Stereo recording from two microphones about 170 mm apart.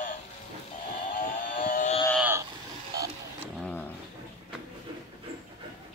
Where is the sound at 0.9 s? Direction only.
50° left (ahead or behind).